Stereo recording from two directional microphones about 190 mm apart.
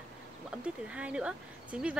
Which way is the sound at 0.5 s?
5° right (ahead or behind).